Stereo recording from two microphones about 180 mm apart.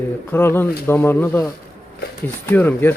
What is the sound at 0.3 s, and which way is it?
Speech, 10° left (ahead or behind).